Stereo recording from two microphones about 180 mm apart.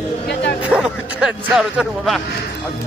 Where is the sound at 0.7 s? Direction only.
5° right (ahead or behind).